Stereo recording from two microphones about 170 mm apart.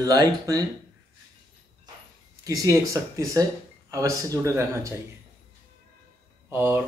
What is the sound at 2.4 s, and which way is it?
Speech, 20° right (ahead or behind).